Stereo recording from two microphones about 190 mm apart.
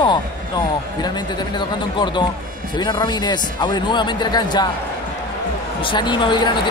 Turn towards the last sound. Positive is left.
turn(degrees=25)  # may be behind; listen again after turning